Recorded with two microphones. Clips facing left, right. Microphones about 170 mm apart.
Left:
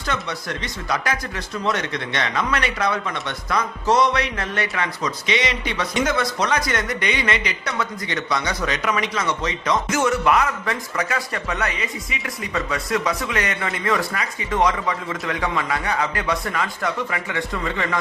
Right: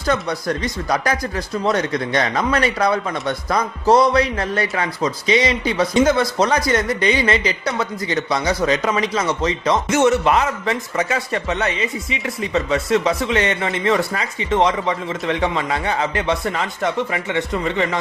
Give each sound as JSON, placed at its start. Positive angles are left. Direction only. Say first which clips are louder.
{"t": 0.1, "sound": "speech", "louder": "right 7 dB", "side_deg": -40}